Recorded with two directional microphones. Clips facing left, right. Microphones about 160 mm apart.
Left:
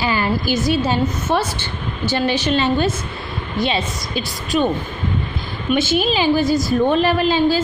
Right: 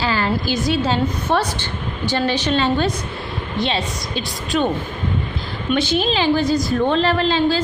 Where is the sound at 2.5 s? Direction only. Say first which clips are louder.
Even; 10° left (ahead or behind).